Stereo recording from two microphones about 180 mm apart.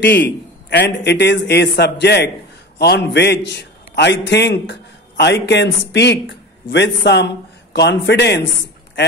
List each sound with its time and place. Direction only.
0.0 s a man's voice: 70° left (ahead or behind)